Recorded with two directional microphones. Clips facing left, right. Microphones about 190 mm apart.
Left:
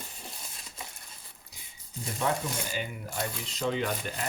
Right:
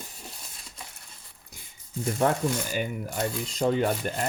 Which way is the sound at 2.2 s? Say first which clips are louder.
Right 5 dB; 50° right (ahead or behind).